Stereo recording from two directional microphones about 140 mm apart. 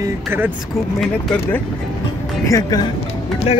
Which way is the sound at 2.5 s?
25° left (ahead or behind).